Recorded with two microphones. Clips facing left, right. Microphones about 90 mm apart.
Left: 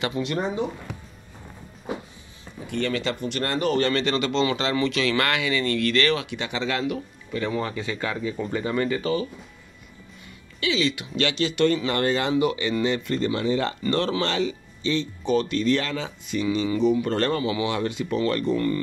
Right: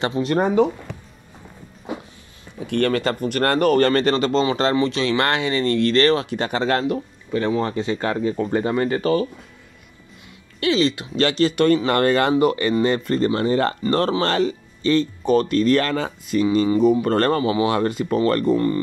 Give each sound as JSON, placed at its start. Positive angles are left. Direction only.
{"t": 0.0, "sound": "speech", "side_deg": -40}
{"t": 2.6, "sound": "speech", "side_deg": -60}
{"t": 10.6, "sound": "speech", "side_deg": -40}
{"t": 17.4, "sound": "speech", "side_deg": -35}
{"t": 17.6, "sound": "speech", "side_deg": -45}